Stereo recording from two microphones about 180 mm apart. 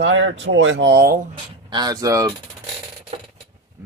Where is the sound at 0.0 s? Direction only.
90° right; by 1.2 s 60° right (ahead or behind).